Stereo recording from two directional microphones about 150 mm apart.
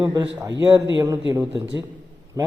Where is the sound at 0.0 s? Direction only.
25° right (ahead or behind).